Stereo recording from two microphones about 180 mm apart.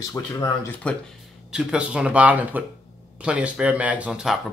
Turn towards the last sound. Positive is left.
turn(degrees=-5)  # may be behind; listen again after turning